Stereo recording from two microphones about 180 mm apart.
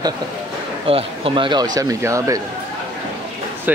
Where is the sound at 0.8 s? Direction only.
30° right (ahead or behind).